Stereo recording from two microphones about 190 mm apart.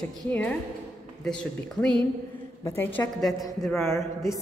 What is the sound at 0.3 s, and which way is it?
A woman's voice, 10° left (ahead or behind).